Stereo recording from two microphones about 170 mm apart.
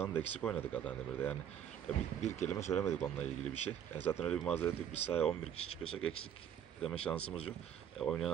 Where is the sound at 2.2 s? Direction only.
45° left (ahead or behind).